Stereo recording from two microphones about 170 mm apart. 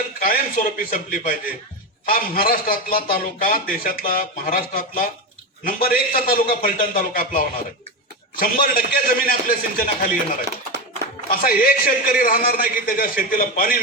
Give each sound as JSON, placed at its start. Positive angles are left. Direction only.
{"t": 0.2, "sound": "a man's voice", "side_deg": 55}
{"t": 11.3, "sound": "a man's voice", "side_deg": 60}